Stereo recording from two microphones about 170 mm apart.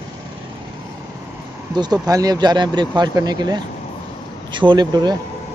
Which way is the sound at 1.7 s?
25° right (ahead or behind).